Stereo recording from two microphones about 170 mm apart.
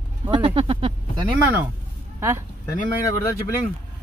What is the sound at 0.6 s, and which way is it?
Speech, 35° right (ahead or behind).